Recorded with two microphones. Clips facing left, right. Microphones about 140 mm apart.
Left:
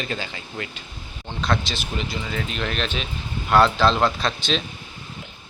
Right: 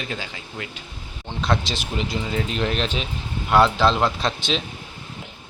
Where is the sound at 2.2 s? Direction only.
25° right (ahead or behind).